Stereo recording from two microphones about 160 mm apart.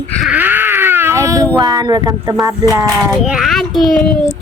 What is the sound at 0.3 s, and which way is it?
Baby cry, 10° right (ahead or behind).